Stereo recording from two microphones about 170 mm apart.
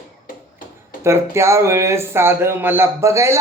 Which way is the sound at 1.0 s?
15° right (ahead or behind).